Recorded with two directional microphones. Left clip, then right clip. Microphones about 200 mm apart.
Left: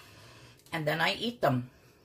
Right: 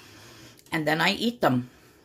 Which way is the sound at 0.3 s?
55° right (ahead or behind).